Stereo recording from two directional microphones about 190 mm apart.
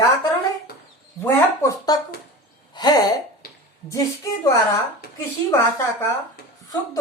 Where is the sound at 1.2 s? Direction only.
20° left (ahead or behind).